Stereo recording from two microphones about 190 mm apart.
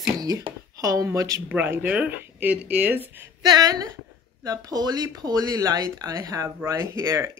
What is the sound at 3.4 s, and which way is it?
A woman's voice, 20° right (ahead or behind).